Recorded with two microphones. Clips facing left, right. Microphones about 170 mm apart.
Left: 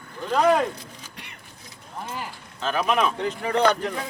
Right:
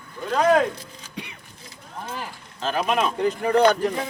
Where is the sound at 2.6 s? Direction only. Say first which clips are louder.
Even; 35° right (ahead or behind).